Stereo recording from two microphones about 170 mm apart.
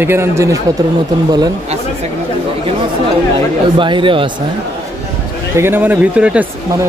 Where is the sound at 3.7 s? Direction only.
30° right (ahead or behind).